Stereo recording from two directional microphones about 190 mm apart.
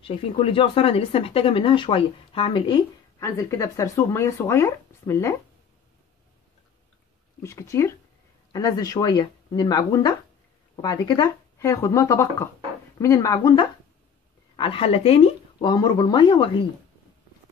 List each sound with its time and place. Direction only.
0.0 s speech: 30° left (ahead or behind)
3.2 s speech: 15° left (ahead or behind)
7.4 s speech: 15° left (ahead or behind)